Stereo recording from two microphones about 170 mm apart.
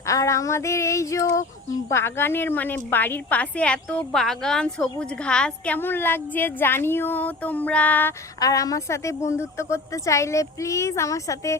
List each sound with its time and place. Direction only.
0.0 s a woman's voice: 20° left (ahead or behind)
8.4 s a woman's voice: 20° left (ahead or behind)